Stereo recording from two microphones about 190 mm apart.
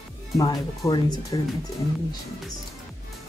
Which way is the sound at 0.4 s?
20° left (ahead or behind).